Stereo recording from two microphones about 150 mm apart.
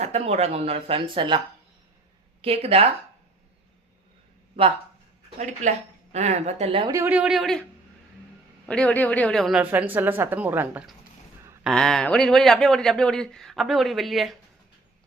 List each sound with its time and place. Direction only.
0.0 s speech: 45° right (ahead or behind)
2.4 s speech: 40° right (ahead or behind)
5.4 s speech: 55° right (ahead or behind)
6.8 s speech: 20° right (ahead or behind)
7.1 s speech: 5° right (ahead or behind)
8.6 s a woman's voice: 5° left (ahead or behind); by 10.8 s 10° right (ahead or behind)
11.6 s speech: 5° left (ahead or behind)